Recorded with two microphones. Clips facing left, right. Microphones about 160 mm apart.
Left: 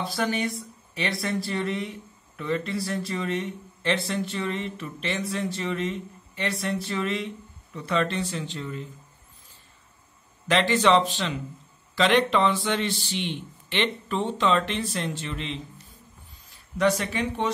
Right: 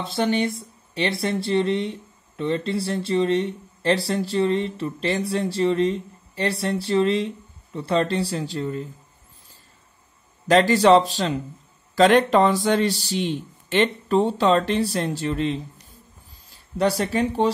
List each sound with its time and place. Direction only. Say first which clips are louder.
0.0 s speech: right 5 dB; 25° right (ahead or behind)
10.5 s speech: right 6 dB; 40° right (ahead or behind)